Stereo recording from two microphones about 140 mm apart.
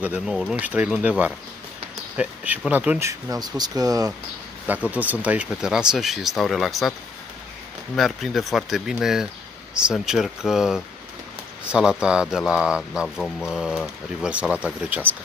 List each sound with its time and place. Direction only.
0.0 s speech: 10° right (ahead or behind)
3.1 s speech: 25° right (ahead or behind)
4.6 s speech: 10° right (ahead or behind)
7.9 s speech: centre (ahead or behind)